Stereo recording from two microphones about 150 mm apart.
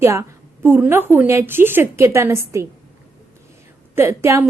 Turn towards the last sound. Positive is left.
turn(degrees=-15)  # may be behind; listen again after turning